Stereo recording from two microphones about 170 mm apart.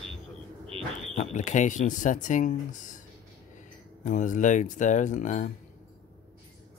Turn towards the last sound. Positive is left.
turn(degrees=45)  # may be behind; listen again after turning